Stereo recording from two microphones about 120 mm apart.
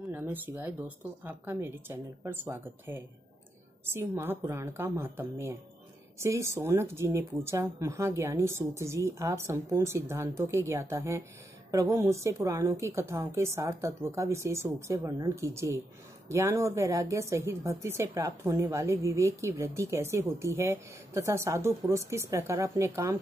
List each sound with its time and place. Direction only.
0.1 s a woman's voice: 15° right (ahead or behind)